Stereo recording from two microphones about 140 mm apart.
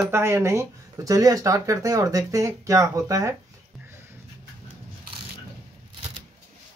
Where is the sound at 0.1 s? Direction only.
20° right (ahead or behind).